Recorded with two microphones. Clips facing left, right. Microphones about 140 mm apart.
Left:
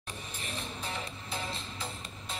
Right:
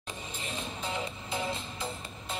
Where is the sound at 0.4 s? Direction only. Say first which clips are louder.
Right 2 dB; 20° right (ahead or behind).